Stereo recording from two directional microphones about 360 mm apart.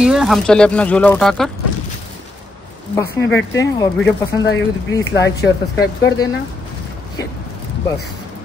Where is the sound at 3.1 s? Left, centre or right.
Left.